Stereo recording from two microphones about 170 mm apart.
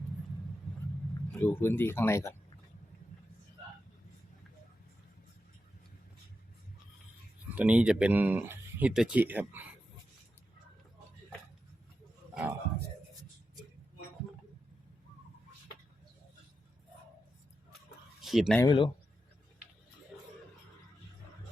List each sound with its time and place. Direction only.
1.3 s speech: 10° left (ahead or behind)
7.5 s speech: 5° right (ahead or behind)
12.3 s a man's voice: 5° right (ahead or behind)
18.2 s a sound: centre (ahead or behind)
18.6 s speech: 25° left (ahead or behind)